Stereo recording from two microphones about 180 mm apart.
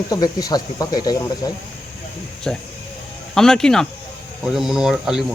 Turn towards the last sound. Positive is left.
turn(degrees=0)  # may be behind; listen again after turning